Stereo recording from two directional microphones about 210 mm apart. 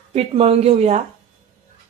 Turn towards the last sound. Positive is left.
turn(degrees=-30)  # may be behind; listen again after turning